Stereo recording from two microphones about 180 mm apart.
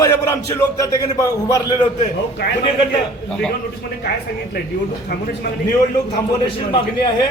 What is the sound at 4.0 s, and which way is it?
Speech, 60° left (ahead or behind).